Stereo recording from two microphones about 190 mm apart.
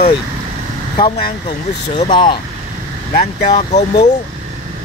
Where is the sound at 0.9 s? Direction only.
25° left (ahead or behind).